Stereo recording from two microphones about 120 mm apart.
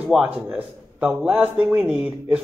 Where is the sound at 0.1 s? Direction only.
5° right (ahead or behind).